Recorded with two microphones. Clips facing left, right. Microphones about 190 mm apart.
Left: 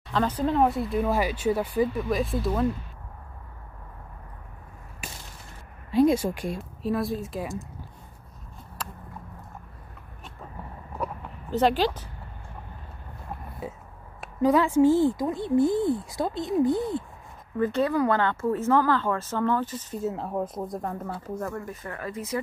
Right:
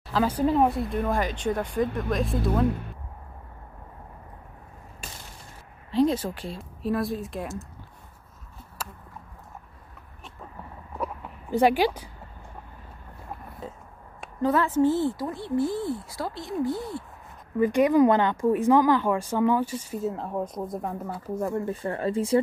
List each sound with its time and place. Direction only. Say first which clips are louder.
0.1 s speech: right 2 dB; 10° right (ahead or behind)
5.9 s speech: left 2 dB; 10° left (ahead or behind)
6.6 s speech: right 2 dB; centre (ahead or behind)
8.8 s a sound: even; 5° right (ahead or behind)
11.5 s speech: right 2 dB; 10° right (ahead or behind)
13.6 s speech: left 2 dB; 10° left (ahead or behind)
17.6 s speech: right 5 dB; 15° right (ahead or behind)
20.0 s speech: left 1 dB; centre (ahead or behind)
21.4 s speech: right 7 dB; 15° right (ahead or behind)
21.6 s speech: right 8 dB; 30° right (ahead or behind)